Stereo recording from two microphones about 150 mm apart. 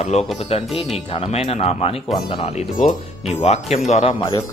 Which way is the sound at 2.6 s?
60° left (ahead or behind).